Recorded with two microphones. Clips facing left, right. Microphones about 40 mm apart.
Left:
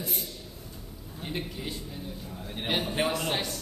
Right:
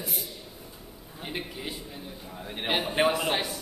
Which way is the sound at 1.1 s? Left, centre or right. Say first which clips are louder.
Even; centre.